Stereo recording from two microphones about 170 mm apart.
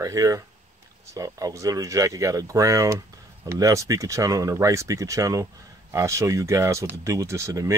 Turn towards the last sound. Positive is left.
turn(degrees=-15)  # may be behind; listen again after turning